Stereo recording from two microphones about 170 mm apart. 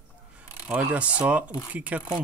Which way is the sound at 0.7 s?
5° right (ahead or behind).